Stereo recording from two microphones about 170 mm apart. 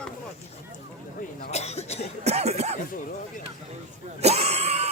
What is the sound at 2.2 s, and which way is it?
Speech, 40° right (ahead or behind).